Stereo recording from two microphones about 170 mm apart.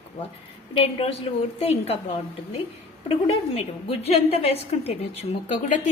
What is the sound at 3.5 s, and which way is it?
A woman's voice, 35° left (ahead or behind).